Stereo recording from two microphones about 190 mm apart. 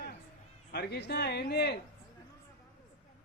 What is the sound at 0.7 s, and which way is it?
A man's voice, 60° left (ahead or behind).